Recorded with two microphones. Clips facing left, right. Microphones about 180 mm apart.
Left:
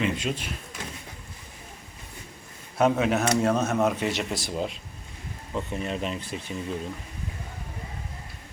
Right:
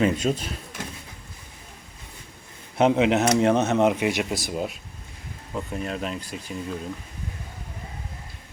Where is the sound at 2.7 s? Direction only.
20° right (ahead or behind); by 6.1 s centre (ahead or behind).